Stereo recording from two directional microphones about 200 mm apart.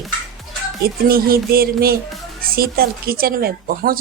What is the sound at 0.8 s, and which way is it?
Speech, 50° right (ahead or behind).